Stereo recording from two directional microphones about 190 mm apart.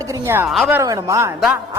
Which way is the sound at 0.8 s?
15° right (ahead or behind).